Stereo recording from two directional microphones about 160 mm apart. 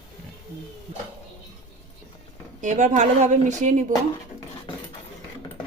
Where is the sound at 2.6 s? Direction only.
50° right (ahead or behind).